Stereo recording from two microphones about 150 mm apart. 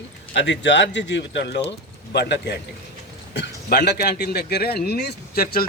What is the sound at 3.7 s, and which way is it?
A man's voice, 90° left.